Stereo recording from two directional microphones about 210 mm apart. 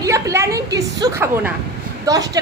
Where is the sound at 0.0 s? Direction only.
15° right (ahead or behind).